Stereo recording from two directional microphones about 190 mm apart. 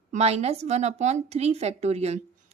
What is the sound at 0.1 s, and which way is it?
A woman's voice, 35° right (ahead or behind).